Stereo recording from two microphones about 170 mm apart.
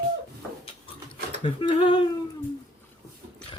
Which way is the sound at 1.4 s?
30° left (ahead or behind).